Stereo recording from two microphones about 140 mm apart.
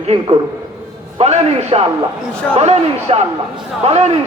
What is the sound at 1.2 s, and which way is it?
A man's voice, 50° right (ahead or behind).